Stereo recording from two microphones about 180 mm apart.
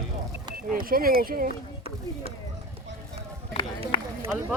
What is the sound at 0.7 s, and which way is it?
Speech, 50° right (ahead or behind).